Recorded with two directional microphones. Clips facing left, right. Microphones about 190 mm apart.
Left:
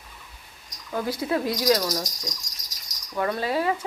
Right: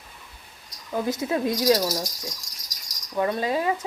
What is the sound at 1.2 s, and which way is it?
Speech, 25° right (ahead or behind).